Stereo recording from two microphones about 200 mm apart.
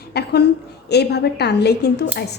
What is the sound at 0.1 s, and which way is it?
A woman's voice, 55° left (ahead or behind).